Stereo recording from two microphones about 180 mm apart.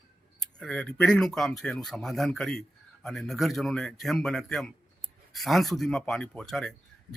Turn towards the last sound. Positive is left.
turn(degrees=5)  # may be behind; listen again after turning